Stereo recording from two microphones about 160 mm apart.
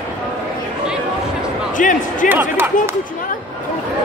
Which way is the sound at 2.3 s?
10° right (ahead or behind).